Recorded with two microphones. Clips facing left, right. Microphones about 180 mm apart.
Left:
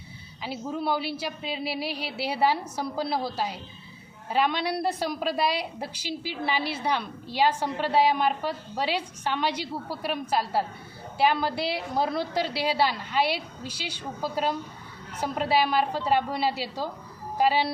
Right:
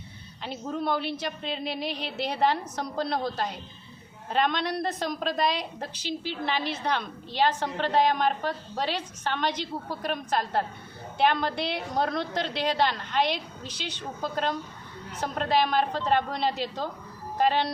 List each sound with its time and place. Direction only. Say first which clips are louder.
0.4 s a woman's voice: left 1 dB; 5° left (ahead or behind)